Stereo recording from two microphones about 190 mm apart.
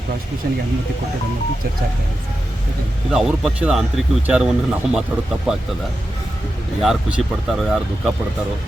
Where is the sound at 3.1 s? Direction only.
5° right (ahead or behind).